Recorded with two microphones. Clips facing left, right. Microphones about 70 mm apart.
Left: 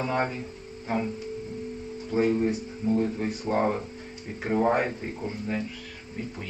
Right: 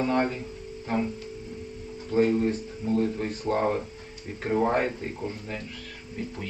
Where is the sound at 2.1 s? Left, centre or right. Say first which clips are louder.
Right 1 dB; centre.